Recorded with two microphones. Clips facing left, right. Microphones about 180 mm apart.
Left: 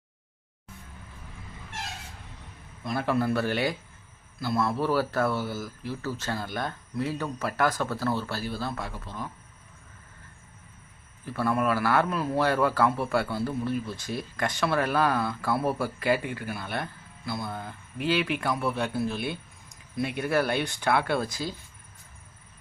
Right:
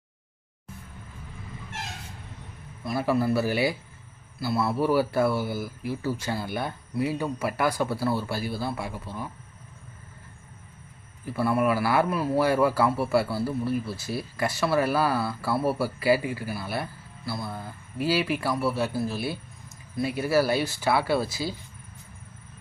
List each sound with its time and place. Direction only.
2.8 s a man's voice: 5° right (ahead or behind)
11.3 s a man's voice: 10° right (ahead or behind)